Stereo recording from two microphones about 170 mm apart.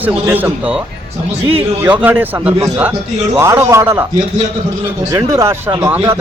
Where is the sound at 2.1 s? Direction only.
10° right (ahead or behind).